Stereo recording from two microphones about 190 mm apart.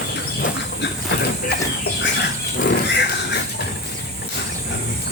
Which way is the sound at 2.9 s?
65° left (ahead or behind).